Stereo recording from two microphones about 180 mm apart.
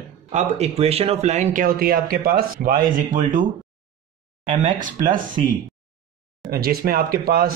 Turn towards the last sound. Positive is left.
turn(degrees=-55)  # may be behind; listen again after turning